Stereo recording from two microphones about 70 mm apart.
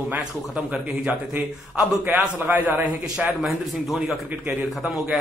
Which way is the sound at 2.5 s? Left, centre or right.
Right.